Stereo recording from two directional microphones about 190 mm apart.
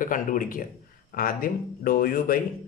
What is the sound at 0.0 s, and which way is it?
Speech, 45° left (ahead or behind).